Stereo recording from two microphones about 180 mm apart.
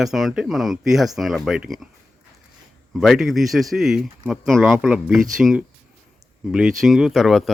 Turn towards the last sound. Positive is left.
turn(degrees=0)  # may be behind; listen again after turning